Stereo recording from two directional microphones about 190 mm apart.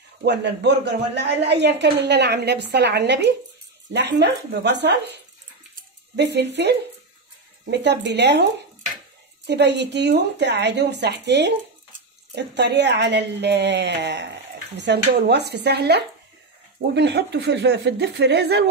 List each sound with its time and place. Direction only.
0.2 s a woman's voice: 65° right (ahead or behind)
9.5 s a woman's voice: 65° right (ahead or behind)